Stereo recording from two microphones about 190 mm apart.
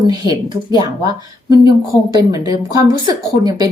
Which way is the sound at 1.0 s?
20° right (ahead or behind).